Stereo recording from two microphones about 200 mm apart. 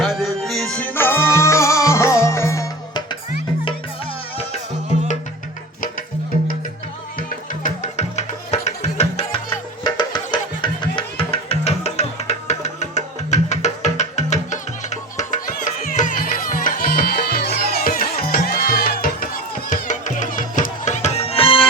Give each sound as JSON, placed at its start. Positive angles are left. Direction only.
{"t": 0.0, "sound": "music", "side_deg": 0}
{"t": 7.2, "sound": "music", "side_deg": 40}